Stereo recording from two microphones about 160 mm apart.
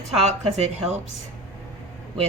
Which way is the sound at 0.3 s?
40° right (ahead or behind).